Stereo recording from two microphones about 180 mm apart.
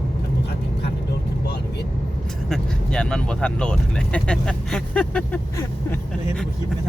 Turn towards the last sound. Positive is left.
turn(degrees=10)  # may be behind; listen again after turning